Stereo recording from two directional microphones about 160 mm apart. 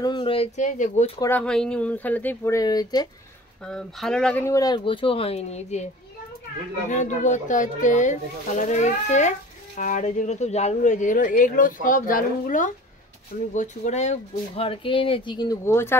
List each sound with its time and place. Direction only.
0.0 s speech: 30° left (ahead or behind)
0.6 s speech: 50° left (ahead or behind)
1.4 s speech: 5° left (ahead or behind); by 3.1 s 25° left (ahead or behind)
3.6 s speech: 5° left (ahead or behind)
4.4 s speech: 20° left (ahead or behind); by 5.9 s 45° left (ahead or behind)
6.9 s speech: 50° left (ahead or behind); by 16.0 s 15° left (ahead or behind)